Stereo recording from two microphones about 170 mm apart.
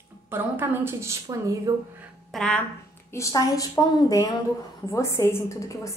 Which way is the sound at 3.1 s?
20° left (ahead or behind).